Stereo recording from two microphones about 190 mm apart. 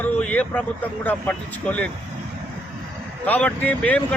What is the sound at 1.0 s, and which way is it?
Speech, 5° left (ahead or behind).